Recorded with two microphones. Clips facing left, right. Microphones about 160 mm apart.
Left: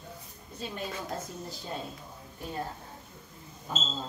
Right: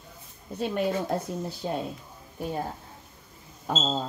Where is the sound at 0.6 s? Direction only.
65° right (ahead or behind).